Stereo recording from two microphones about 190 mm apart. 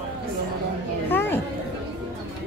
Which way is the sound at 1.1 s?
10° left (ahead or behind).